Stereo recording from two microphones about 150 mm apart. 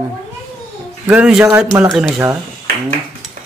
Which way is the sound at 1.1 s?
5° right (ahead or behind).